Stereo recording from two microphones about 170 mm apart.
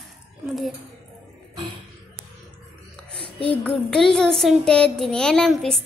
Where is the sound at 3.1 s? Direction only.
5° left (ahead or behind).